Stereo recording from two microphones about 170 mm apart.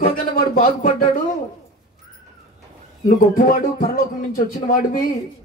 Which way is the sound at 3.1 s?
55° left (ahead or behind).